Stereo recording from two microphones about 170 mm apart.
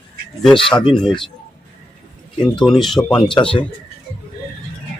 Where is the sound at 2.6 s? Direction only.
Centre (ahead or behind).